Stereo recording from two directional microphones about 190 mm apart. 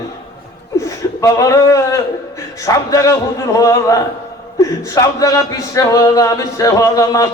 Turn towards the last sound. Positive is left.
turn(degrees=20)  # may be behind; listen again after turning